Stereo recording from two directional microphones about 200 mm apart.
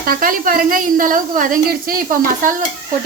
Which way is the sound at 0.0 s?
45° right (ahead or behind).